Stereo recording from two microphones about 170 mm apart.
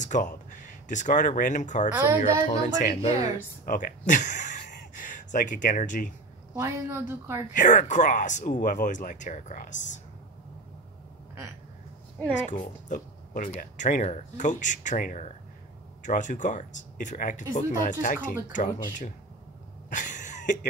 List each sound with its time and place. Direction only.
0.0 s speech: 45° left (ahead or behind)
6.5 s a woman's voice: 15° right (ahead or behind)
7.5 s speech: 50° left (ahead or behind)
12.4 s speech: 45° left (ahead or behind)
19.9 s a sound: 50° left (ahead or behind)